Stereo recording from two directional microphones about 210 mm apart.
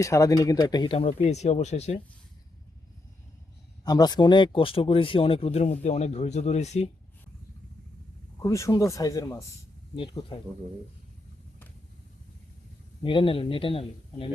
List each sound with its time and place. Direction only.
0.0 s speech: 15° left (ahead or behind); by 2.0 s 30° left (ahead or behind)
3.8 s speech: 20° left (ahead or behind)
8.4 s speech: 15° left (ahead or behind)
13.0 s speech: 25° left (ahead or behind)